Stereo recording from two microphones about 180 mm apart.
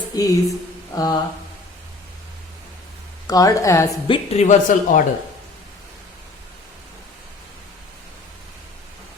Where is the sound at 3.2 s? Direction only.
20° left (ahead or behind).